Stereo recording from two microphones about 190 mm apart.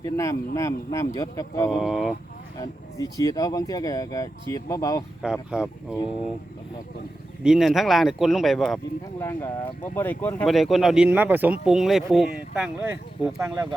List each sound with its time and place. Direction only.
0.0 s speech: 15° left (ahead or behind)
1.7 s speech: centre (ahead or behind)
2.6 s speech: 20° left (ahead or behind)
5.2 s speech: 5° right (ahead or behind)
7.4 s speech: centre (ahead or behind)
9.9 s speech: 10° left (ahead or behind); by 13.7 s 10° right (ahead or behind)